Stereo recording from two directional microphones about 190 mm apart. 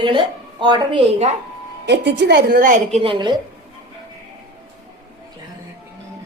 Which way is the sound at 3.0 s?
25° right (ahead or behind).